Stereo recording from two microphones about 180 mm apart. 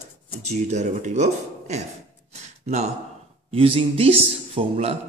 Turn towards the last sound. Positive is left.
turn(degrees=-35)  # may be behind; listen again after turning